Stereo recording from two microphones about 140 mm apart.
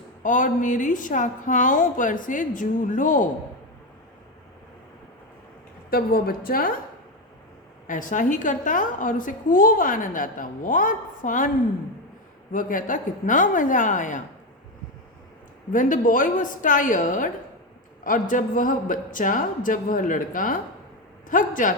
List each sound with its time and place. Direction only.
0.2 s a woman's voice: 65° left (ahead or behind)
5.9 s a woman's voice: 90° left
7.9 s a woman's voice: 70° left (ahead or behind)
12.5 s a woman's voice: 75° left (ahead or behind)
15.7 s a woman's voice: 75° left (ahead or behind)